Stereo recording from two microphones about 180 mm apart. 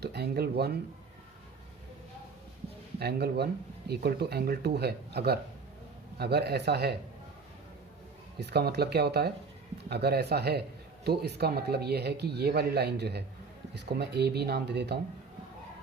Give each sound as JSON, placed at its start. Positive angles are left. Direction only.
{"t": 0.0, "sound": "speech", "side_deg": -65}
{"t": 3.0, "sound": "speech", "side_deg": -65}
{"t": 8.4, "sound": "speech", "side_deg": -65}